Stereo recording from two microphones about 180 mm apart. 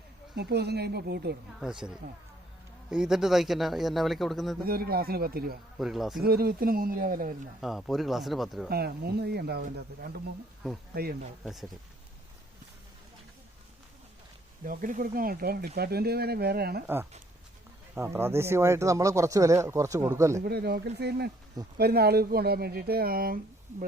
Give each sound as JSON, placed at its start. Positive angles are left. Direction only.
{"t": 0.3, "sound": "speech", "side_deg": -65}
{"t": 1.5, "sound": "speech", "side_deg": -5}
{"t": 2.9, "sound": "speech", "side_deg": -5}
{"t": 4.6, "sound": "speech", "side_deg": -55}
{"t": 5.8, "sound": "speech", "side_deg": 0}
{"t": 6.2, "sound": "speech", "side_deg": -60}
{"t": 7.6, "sound": "speech", "side_deg": 0}
{"t": 8.7, "sound": "speech", "side_deg": -60}
{"t": 14.6, "sound": "speech", "side_deg": -50}
{"t": 16.8, "sound": "speech", "side_deg": -10}
{"t": 20.4, "sound": "speech", "side_deg": -60}